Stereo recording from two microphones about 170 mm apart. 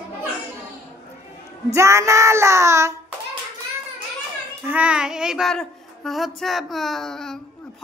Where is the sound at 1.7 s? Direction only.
15° right (ahead or behind).